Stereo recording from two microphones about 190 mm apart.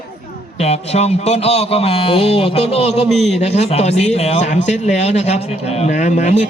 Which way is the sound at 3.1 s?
Centre (ahead or behind).